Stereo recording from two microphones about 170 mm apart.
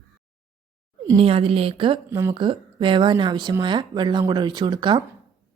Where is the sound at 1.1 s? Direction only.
35° right (ahead or behind).